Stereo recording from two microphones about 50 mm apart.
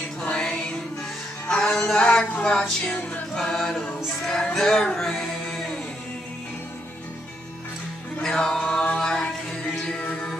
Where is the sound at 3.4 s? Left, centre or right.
Centre.